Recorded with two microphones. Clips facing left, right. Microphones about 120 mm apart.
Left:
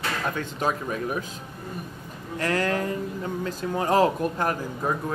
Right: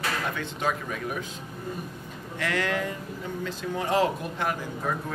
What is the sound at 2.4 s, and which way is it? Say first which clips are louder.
A man's voice: left 3 dB; 40° left (ahead or behind).